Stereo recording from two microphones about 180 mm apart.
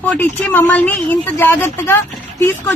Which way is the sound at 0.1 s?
10° left (ahead or behind).